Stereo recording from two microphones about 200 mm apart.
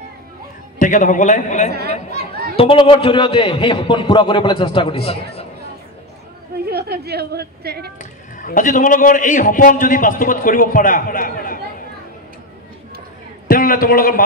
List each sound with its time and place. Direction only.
0.7 s a man's voice: 40° left (ahead or behind)
1.7 s speech: 55° right (ahead or behind)
2.1 s children playing: 50° right (ahead or behind)
2.5 s a man's voice: 25° left (ahead or behind)
6.6 s a woman's voice: 50° right (ahead or behind)
8.0 s a man's voice: 40° left (ahead or behind)
13.5 s a man's voice: 45° left (ahead or behind)